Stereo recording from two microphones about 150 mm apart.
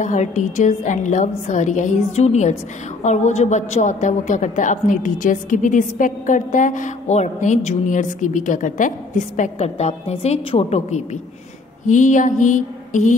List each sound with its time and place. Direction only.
0.0 s a woman's voice: 55° left (ahead or behind)